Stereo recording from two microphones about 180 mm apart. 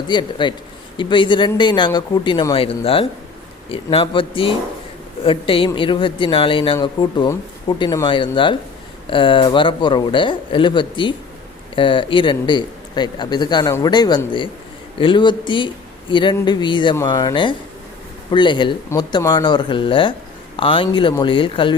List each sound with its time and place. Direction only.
0.1 s speech: 25° left (ahead or behind)